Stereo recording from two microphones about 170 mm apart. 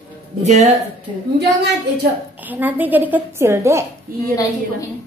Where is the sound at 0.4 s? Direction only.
40° right (ahead or behind).